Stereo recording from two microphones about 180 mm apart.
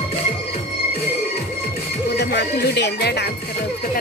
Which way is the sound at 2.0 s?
65° left (ahead or behind).